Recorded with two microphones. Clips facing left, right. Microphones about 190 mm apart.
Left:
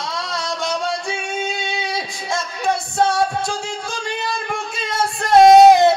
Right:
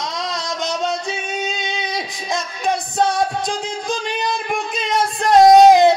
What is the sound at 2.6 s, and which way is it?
Music, 20° right (ahead or behind).